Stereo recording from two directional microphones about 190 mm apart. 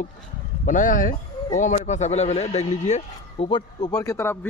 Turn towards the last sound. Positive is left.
turn(degrees=15)  # may be behind; listen again after turning